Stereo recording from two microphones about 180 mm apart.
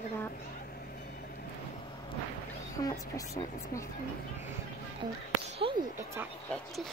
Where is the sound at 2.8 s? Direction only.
25° left (ahead or behind).